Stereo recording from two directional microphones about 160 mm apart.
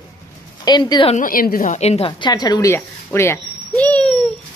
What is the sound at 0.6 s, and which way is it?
Speech, 25° left (ahead or behind).